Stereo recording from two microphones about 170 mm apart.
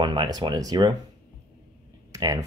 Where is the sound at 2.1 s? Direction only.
20° right (ahead or behind).